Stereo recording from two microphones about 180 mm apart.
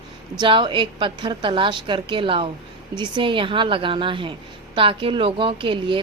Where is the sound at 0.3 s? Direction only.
30° right (ahead or behind).